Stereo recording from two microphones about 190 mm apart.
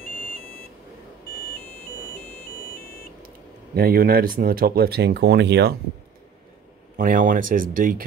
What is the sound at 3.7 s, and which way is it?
Speech, 50° right (ahead or behind).